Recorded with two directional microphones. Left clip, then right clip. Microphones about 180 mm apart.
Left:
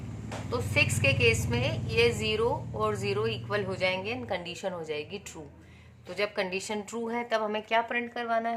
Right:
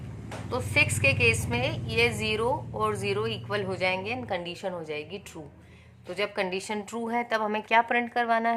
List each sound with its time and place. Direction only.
0.5 s a woman's voice: 20° right (ahead or behind); by 8.5 s 40° right (ahead or behind)